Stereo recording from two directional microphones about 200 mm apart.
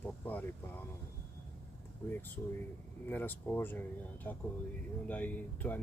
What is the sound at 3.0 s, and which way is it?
Speech, 10° left (ahead or behind).